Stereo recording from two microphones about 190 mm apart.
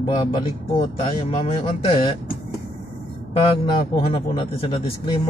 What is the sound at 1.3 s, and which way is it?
Speech, 25° left (ahead or behind).